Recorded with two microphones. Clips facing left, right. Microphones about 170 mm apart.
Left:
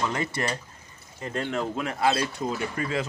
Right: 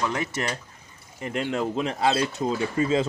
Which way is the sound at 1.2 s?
15° right (ahead or behind).